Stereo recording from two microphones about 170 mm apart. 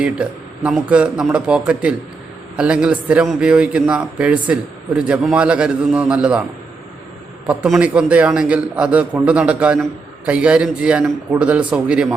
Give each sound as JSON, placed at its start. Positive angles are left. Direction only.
{"t": 0.0, "sound": "a man's voice", "side_deg": -5}
{"t": 7.4, "sound": "a man's voice", "side_deg": -5}